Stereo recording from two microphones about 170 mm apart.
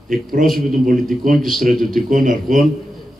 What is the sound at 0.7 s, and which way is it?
Speech, 50° right (ahead or behind).